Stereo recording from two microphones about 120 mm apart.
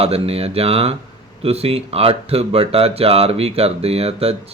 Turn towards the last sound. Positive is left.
turn(degrees=-55)  # may be behind; listen again after turning